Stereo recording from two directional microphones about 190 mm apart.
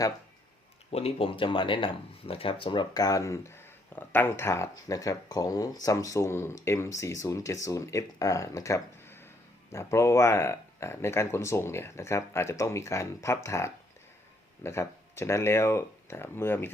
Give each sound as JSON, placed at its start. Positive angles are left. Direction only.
{"t": 0.9, "sound": "speech", "side_deg": 30}